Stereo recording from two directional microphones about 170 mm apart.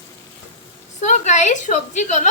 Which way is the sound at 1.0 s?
45° left (ahead or behind).